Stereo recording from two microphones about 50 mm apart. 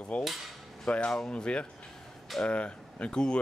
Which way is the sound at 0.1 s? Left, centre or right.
Left.